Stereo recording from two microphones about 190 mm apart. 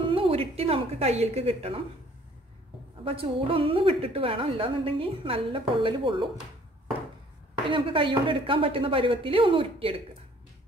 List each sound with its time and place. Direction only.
0.0 s a woman's voice: 30° right (ahead or behind)
3.1 s a woman's voice: 30° right (ahead or behind)
7.7 s a woman's voice: 25° right (ahead or behind)